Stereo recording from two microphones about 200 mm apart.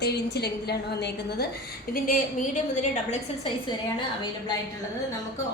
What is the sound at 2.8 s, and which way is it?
Speech, 35° left (ahead or behind).